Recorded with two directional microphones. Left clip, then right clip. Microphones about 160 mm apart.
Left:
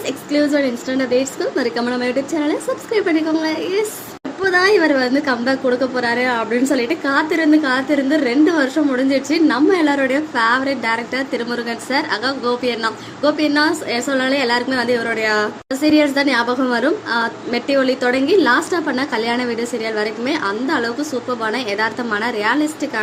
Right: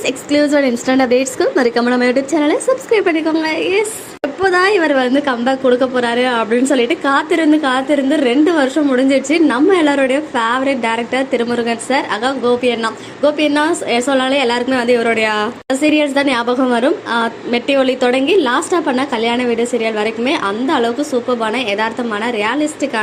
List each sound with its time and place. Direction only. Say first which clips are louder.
0.0 s a woman's voice: right 4 dB; 30° right (ahead or behind); by 22.9 s 10° right (ahead or behind)